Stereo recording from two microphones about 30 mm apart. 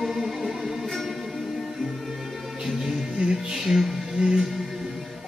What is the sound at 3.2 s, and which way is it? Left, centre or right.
Music, right.